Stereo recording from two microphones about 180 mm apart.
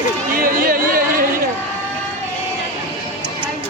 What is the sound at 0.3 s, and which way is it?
Chatter, 55° right (ahead or behind).